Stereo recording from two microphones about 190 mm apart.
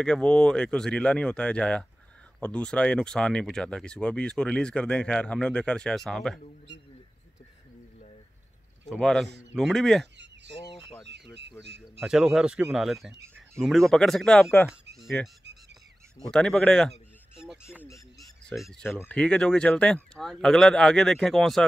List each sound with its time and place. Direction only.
0.0 s speech: 5° left (ahead or behind)
8.8 s speech: centre (ahead or behind)
10.1 s a sound: 65° right (ahead or behind)
11.8 s speech: 5° right (ahead or behind)
15.0 s music: centre (ahead or behind)
16.2 s speech: 5° left (ahead or behind)
18.7 s speech: 10° left (ahead or behind)